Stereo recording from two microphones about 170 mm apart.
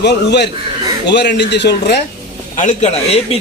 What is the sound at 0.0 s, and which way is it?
Speech, 85° left.